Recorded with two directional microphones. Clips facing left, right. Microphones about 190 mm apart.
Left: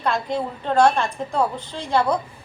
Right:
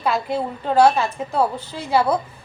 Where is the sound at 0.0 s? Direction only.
5° right (ahead or behind).